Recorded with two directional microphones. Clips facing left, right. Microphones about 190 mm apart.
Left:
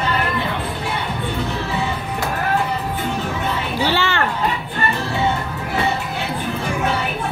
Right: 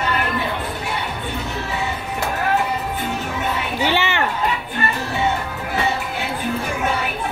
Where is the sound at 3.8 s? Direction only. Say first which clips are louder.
Left 1 dB; 20° right (ahead or behind).